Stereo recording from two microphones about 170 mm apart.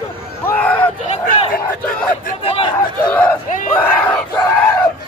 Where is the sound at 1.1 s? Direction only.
50° left (ahead or behind).